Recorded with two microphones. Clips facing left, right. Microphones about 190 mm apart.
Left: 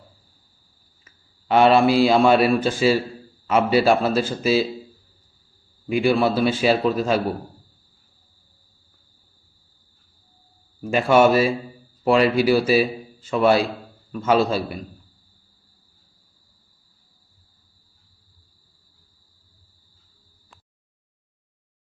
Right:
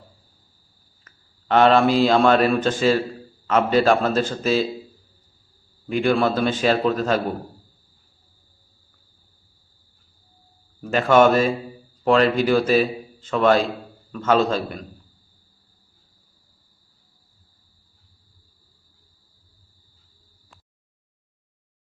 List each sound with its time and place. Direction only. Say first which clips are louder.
1.0 s a man's voice: even; 10° left (ahead or behind)
5.9 s a man's voice: left 1 dB; 10° left (ahead or behind)
10.8 s a man's voice: even; 10° left (ahead or behind)